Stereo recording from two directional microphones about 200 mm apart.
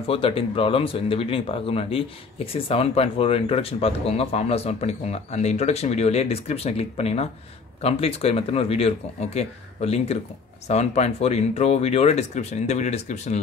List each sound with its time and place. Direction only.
0.0 s speech: 25° left (ahead or behind)